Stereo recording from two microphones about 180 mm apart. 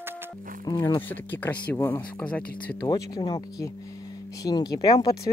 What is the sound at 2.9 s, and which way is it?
Speech, 20° left (ahead or behind).